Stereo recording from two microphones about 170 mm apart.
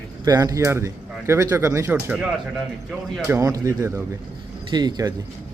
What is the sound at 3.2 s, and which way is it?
Speech, 15° right (ahead or behind).